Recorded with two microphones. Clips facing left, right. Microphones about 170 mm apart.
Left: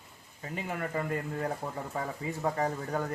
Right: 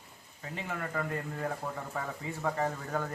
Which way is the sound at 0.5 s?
10° left (ahead or behind).